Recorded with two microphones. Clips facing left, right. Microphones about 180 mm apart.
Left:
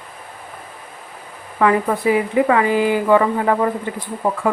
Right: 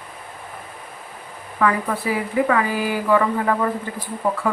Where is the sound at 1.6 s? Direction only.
20° left (ahead or behind).